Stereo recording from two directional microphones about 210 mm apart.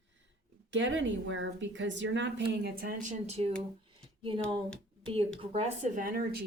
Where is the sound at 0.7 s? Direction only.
60° right (ahead or behind).